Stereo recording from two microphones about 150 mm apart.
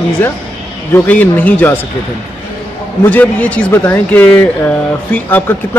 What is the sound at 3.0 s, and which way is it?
A man's voice, 10° left (ahead or behind).